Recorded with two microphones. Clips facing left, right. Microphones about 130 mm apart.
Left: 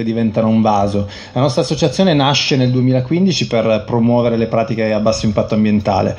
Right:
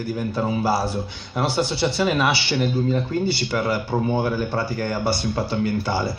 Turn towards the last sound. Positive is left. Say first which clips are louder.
# left 10 dB
turn(degrees=85)